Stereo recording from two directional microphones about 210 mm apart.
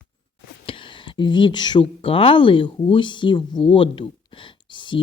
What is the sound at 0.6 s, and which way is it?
Speech, 25° left (ahead or behind).